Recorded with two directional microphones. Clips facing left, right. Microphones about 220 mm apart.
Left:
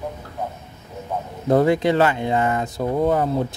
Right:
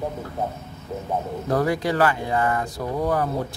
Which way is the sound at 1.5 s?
25° left (ahead or behind).